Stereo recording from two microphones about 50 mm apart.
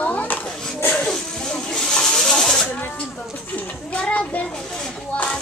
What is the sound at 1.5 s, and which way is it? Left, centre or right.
Snake, centre.